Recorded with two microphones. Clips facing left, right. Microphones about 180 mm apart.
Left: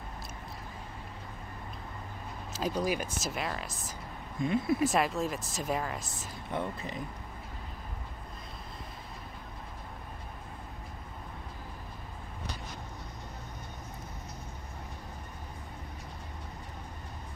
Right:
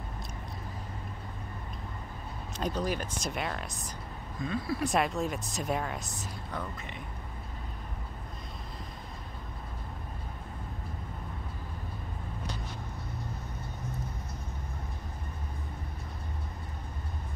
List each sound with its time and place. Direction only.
2.5 s speech: 5° left (ahead or behind)
4.4 s speech: 25° left (ahead or behind)
4.8 s speech: centre (ahead or behind)
6.5 s speech: 30° left (ahead or behind)